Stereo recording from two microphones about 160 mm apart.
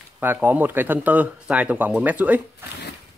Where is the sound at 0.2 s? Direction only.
10° right (ahead or behind).